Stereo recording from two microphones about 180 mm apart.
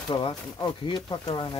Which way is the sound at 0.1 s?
25° left (ahead or behind).